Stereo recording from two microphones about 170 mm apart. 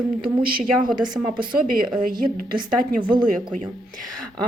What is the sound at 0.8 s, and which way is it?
Speech, 25° right (ahead or behind).